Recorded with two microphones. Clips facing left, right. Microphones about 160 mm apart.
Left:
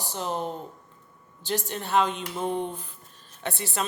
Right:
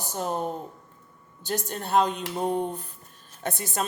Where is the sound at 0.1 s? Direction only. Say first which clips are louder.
Right 2 dB; 45° right (ahead or behind).